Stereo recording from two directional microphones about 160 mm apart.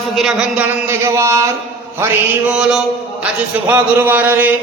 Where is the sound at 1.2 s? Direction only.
20° right (ahead or behind).